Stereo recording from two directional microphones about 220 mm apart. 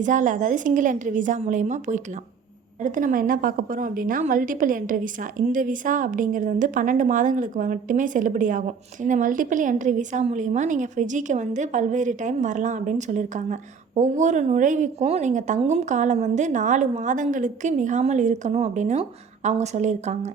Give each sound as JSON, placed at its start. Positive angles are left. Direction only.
{"t": 0.0, "sound": "a woman's voice", "side_deg": -35}